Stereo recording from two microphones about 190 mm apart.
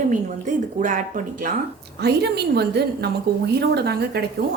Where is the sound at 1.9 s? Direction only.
60° right (ahead or behind).